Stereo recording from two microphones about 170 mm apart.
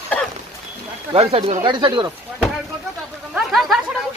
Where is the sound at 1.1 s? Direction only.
35° right (ahead or behind).